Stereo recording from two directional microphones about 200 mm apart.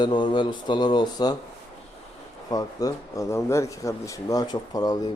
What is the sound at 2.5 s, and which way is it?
Speech, 20° left (ahead or behind).